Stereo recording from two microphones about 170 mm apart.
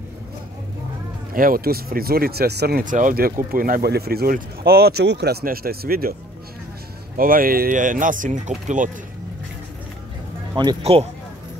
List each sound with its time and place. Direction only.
1.3 s speech: 55° right (ahead or behind)
2.8 s speech: 50° right (ahead or behind)
7.2 s speech: 55° right (ahead or behind)
10.5 s speech: 25° right (ahead or behind)